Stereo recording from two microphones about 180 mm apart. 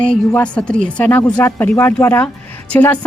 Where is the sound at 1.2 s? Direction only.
20° left (ahead or behind).